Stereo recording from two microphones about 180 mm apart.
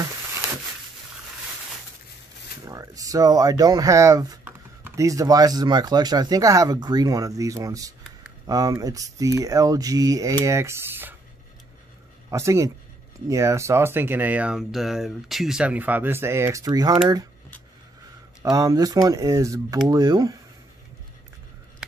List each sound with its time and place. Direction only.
2.6 s speech: 20° right (ahead or behind)
12.3 s speech: 15° right (ahead or behind)
18.4 s speech: 20° right (ahead or behind)